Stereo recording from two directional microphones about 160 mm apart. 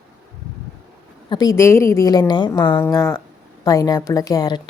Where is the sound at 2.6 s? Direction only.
10° left (ahead or behind).